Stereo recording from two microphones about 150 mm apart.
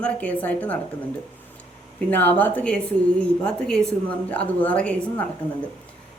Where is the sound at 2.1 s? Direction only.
10° left (ahead or behind).